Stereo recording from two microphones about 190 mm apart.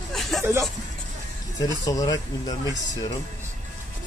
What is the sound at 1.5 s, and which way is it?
Speech, 20° left (ahead or behind).